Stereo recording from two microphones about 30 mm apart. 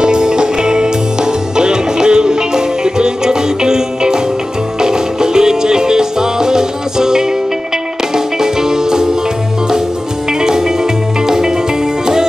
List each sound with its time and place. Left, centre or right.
0.0 s music: right
10.4 s music: right